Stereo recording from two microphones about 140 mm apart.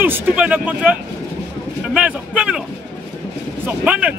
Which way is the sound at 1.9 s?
10° right (ahead or behind).